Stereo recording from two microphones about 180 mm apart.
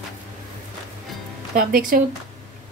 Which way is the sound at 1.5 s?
50° right (ahead or behind).